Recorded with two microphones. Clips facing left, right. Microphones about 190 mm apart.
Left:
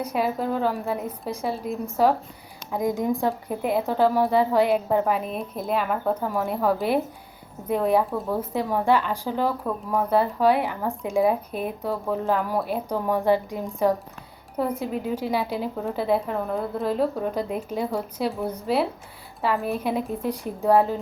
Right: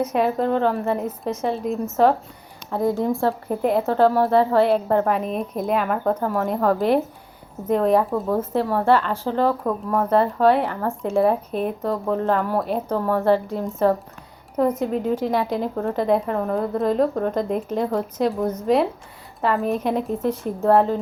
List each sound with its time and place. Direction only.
0.2 s a woman's voice: 5° left (ahead or behind)
14.8 s a woman's voice: 10° left (ahead or behind)
20.0 s speech: 35° right (ahead or behind)
20.2 s speech: 10° left (ahead or behind)